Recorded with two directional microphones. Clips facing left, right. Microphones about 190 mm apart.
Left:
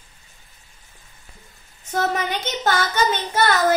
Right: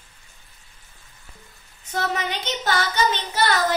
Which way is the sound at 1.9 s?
45° left (ahead or behind).